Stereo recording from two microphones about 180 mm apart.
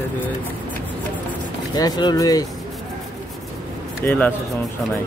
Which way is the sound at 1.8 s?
20° left (ahead or behind).